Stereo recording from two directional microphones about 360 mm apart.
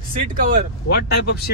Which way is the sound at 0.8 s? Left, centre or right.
Left.